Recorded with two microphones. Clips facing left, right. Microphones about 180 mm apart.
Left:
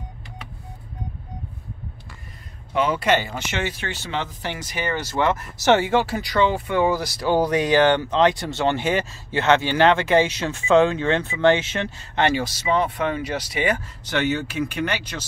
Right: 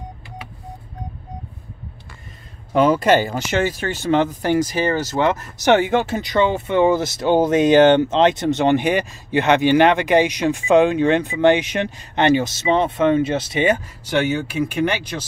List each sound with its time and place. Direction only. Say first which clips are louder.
2.7 s speech: right 6 dB; 40° right (ahead or behind)
5.6 s speech: right 2 dB; 15° right (ahead or behind)